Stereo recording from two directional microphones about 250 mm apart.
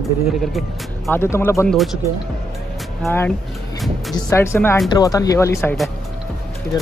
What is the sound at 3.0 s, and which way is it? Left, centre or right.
Speech, centre.